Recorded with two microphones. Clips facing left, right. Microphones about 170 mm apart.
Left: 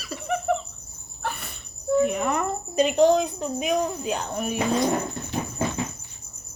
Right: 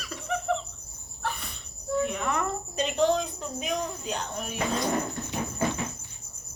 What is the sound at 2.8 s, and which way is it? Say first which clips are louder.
A woman's voice: left 7 dB; 10° left (ahead or behind).